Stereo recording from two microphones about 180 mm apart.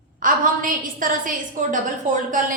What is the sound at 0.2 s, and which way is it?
A woman's voice, 50° right (ahead or behind).